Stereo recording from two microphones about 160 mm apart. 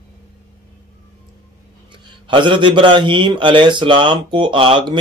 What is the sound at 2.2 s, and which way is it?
A man's voice, 30° right (ahead or behind).